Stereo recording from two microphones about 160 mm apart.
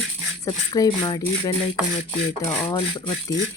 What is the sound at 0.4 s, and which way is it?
Speech, 20° left (ahead or behind).